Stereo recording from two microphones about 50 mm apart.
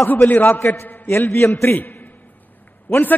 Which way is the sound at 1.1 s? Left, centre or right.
Left.